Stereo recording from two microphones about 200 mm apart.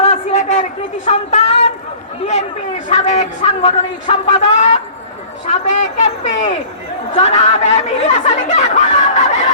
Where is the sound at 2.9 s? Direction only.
35° left (ahead or behind).